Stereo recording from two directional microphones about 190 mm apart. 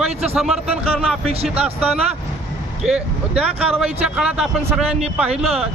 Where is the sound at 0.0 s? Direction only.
Centre (ahead or behind).